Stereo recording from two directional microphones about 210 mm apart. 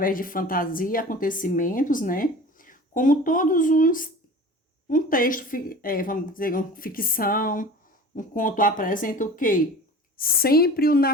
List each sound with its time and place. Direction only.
0.0 s a woman's voice: 40° left (ahead or behind)